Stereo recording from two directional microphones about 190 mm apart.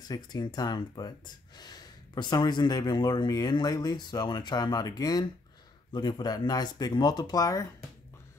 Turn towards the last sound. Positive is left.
turn(degrees=20)  # may be behind; listen again after turning